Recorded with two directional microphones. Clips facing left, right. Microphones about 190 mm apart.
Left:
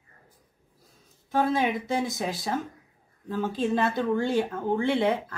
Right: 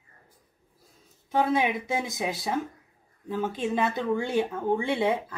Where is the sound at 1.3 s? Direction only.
15° right (ahead or behind).